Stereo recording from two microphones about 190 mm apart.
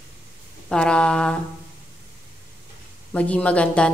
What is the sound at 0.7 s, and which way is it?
Speech, 5° left (ahead or behind).